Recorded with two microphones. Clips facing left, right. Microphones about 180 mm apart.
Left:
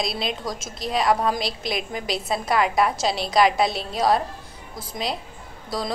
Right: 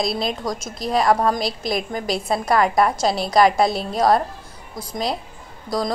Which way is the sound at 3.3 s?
45° right (ahead or behind).